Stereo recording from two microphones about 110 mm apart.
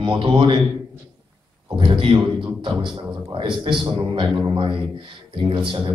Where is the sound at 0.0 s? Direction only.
50° right (ahead or behind).